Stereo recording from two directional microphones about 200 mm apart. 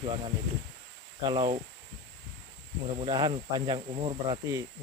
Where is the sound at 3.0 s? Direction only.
25° right (ahead or behind).